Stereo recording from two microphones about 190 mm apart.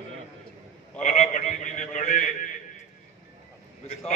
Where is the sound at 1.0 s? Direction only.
40° left (ahead or behind).